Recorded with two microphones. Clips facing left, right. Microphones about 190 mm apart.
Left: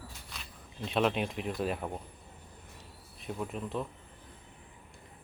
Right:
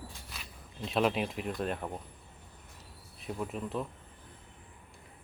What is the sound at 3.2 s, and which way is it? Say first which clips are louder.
Speech: even; centre (ahead or behind).